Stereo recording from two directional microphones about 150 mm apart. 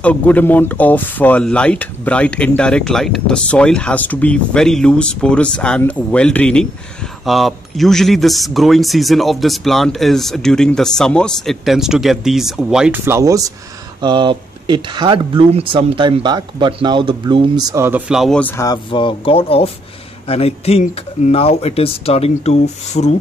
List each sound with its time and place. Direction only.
0.0 s speech: 10° left (ahead or behind)
13.0 s speech: 20° right (ahead or behind)
14.0 s speech: 30° right (ahead or behind); by 18.4 s 5° right (ahead or behind)
18.4 s speech: 20° left (ahead or behind)
18.9 s speech: 35° left (ahead or behind)